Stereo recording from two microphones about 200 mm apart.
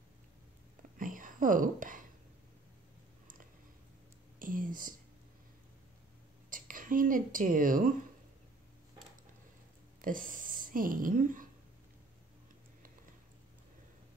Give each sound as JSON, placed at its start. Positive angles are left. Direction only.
{"t": 0.9, "sound": "whispering", "side_deg": -40}
{"t": 4.4, "sound": "speech", "side_deg": -45}
{"t": 6.5, "sound": "speech", "side_deg": -40}
{"t": 10.0, "sound": "a woman's voice", "side_deg": -45}